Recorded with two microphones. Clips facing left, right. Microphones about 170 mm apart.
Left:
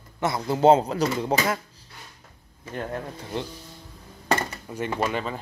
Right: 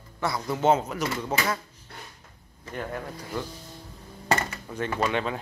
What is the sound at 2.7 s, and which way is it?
Speech, 25° left (ahead or behind).